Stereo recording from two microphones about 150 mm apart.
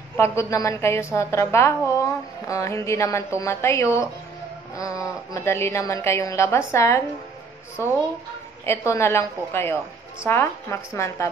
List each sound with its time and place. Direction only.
0.2 s a woman's voice: 20° left (ahead or behind)